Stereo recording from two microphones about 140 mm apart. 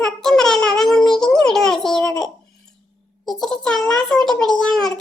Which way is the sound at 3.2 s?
5° left (ahead or behind).